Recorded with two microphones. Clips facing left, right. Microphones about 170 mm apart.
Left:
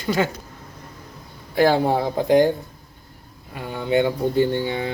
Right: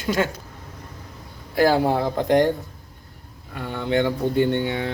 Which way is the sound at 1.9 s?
5° left (ahead or behind).